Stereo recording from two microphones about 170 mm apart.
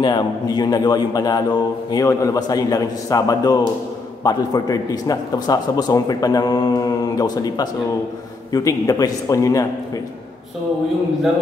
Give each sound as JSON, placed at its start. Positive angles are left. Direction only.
{"t": 0.0, "sound": "a man's voice", "side_deg": 25}